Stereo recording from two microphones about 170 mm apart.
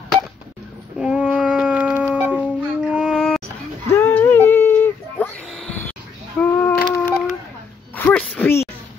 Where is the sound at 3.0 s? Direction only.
Centre (ahead or behind).